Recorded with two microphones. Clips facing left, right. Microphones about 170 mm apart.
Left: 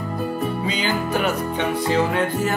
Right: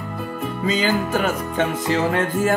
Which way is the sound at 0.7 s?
45° right (ahead or behind).